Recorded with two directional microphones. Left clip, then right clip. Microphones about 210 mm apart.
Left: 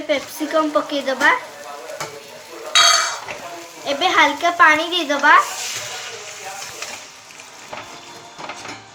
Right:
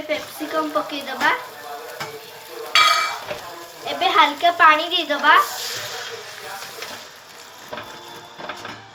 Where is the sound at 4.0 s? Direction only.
20° left (ahead or behind).